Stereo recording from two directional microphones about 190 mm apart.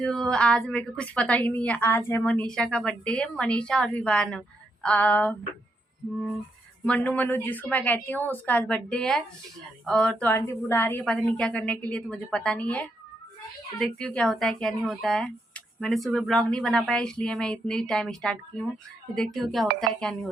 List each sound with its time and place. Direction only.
0.0 s a woman's voice: centre (ahead or behind)
6.8 s a woman's voice: 10° left (ahead or behind)